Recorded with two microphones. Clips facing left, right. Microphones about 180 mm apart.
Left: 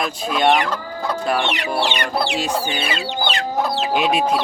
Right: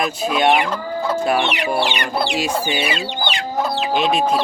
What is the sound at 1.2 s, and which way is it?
Chicken, 5° right (ahead or behind).